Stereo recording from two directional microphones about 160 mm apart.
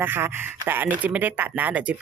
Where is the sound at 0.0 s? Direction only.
15° right (ahead or behind).